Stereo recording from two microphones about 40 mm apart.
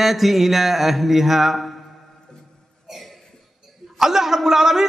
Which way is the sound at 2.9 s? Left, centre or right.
Centre.